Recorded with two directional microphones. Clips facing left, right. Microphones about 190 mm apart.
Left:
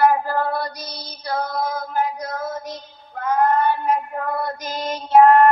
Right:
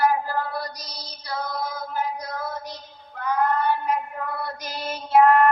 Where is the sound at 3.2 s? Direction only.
45° left (ahead or behind).